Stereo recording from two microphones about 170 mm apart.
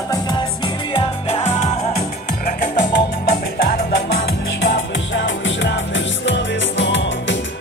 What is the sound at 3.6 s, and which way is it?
Music, 75° left (ahead or behind).